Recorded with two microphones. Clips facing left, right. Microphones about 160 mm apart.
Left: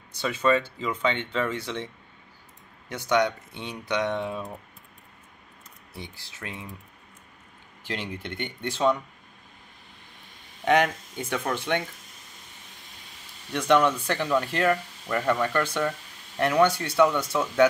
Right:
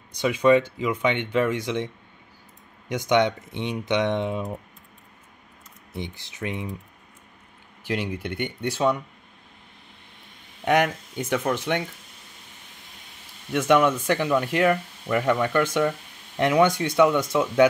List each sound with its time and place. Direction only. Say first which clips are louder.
0.2 s speech: right 5 dB; 15° right (ahead or behind)
2.9 s speech: right 3 dB; 15° right (ahead or behind)
5.9 s speech: right 8 dB; 20° right (ahead or behind)
7.8 s speech: right 6 dB; 10° right (ahead or behind)
10.6 s speech: right 1 dB; 10° right (ahead or behind)
13.5 s speech: right 2 dB; 5° right (ahead or behind)